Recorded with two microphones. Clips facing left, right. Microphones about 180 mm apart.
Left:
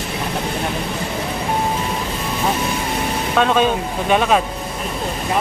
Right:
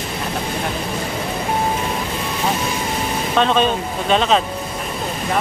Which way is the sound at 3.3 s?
10° left (ahead or behind).